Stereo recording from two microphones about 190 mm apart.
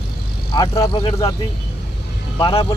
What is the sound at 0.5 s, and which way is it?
Speech, 25° left (ahead or behind).